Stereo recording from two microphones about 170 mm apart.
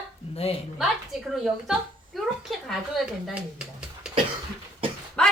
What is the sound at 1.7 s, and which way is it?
Speech, centre (ahead or behind).